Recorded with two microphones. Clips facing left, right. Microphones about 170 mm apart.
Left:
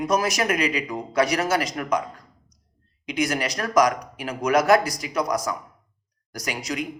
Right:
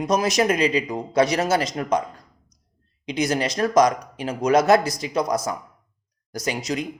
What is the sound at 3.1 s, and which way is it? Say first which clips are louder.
Speech: right 2 dB; 25° right (ahead or behind).